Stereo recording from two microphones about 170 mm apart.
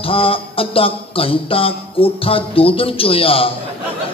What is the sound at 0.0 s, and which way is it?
A man's voice, 35° left (ahead or behind).